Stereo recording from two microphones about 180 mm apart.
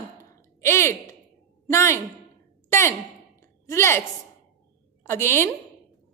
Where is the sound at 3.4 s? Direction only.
15° left (ahead or behind).